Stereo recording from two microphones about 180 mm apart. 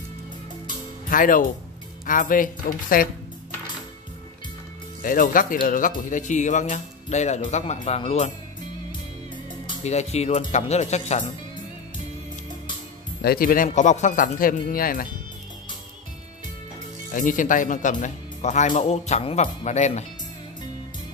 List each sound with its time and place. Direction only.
1.0 s speech: 50° left (ahead or behind)
5.0 s speech: 50° left (ahead or behind)
9.8 s speech: 40° left (ahead or behind)
13.2 s speech: 55° left (ahead or behind)
13.7 s speech: 40° left (ahead or behind)
17.1 s speech: 45° left (ahead or behind)